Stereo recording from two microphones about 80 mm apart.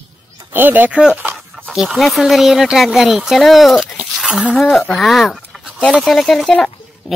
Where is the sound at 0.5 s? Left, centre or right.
Right.